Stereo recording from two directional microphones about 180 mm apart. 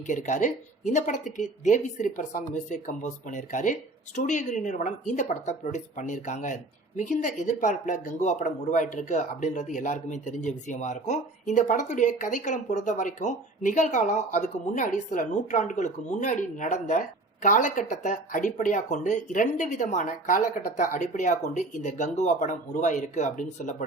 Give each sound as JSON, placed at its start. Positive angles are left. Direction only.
{"t": 0.1, "sound": "speech", "side_deg": 45}